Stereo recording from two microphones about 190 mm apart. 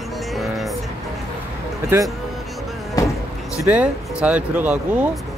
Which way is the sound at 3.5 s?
5° right (ahead or behind).